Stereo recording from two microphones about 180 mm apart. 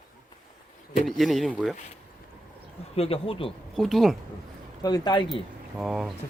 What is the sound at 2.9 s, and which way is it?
Speech, 35° left (ahead or behind).